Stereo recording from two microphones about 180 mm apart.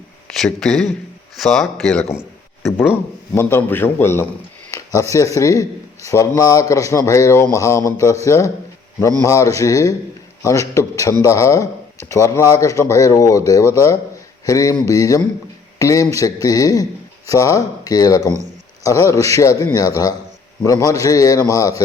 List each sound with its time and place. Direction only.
0.3 s a man's voice: centre (ahead or behind); by 21.8 s 20° left (ahead or behind)